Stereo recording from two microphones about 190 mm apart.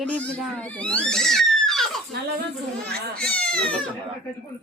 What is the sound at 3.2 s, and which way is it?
Speech, 5° left (ahead or behind).